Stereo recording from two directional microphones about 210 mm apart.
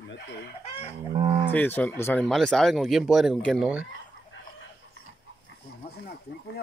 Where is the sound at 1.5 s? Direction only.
10° left (ahead or behind).